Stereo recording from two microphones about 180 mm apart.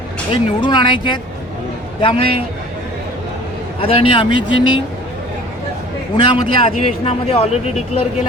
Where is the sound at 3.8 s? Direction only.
30° left (ahead or behind).